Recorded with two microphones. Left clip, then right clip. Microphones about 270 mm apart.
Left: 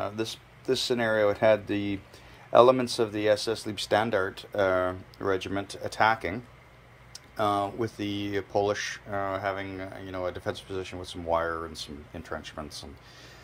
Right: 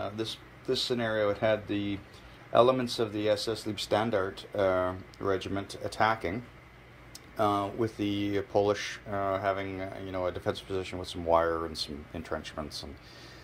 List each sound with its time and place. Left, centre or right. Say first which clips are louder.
0.0 s speech: left 3 dB; centre